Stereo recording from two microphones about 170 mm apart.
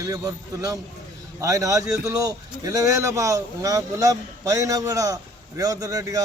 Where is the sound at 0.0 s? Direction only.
20° right (ahead or behind).